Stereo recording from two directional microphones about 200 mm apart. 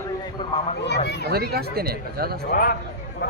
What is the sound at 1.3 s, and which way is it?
Speech, 50° right (ahead or behind).